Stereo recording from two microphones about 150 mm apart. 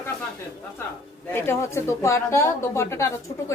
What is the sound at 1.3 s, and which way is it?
Speech, 15° left (ahead or behind).